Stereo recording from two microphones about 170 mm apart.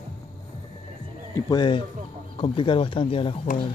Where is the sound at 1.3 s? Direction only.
25° left (ahead or behind).